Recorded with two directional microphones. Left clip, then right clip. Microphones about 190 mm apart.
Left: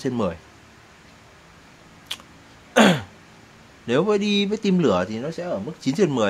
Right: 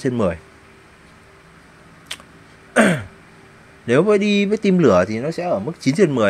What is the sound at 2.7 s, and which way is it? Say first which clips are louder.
Throat clearing: right 1 dB; 15° right (ahead or behind).